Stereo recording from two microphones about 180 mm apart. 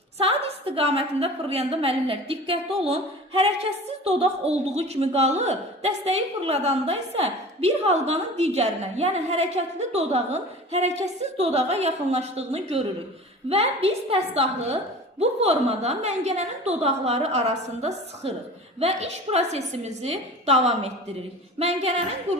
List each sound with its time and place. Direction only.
0.2 s a woman's voice: 30° right (ahead or behind)